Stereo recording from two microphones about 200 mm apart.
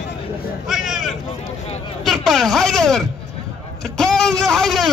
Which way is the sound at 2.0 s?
Centre (ahead or behind).